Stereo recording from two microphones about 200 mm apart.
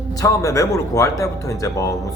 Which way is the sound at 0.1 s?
15° left (ahead or behind).